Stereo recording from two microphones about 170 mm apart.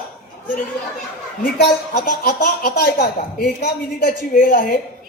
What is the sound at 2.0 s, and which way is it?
Speech, 70° left (ahead or behind).